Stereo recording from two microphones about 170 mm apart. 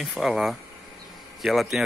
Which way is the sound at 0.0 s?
Centre (ahead or behind).